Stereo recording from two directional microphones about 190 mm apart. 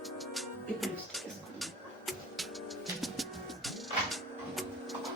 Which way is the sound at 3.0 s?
Centre (ahead or behind).